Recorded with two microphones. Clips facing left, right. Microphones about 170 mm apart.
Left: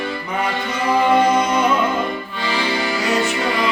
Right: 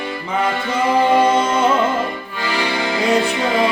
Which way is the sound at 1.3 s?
25° right (ahead or behind).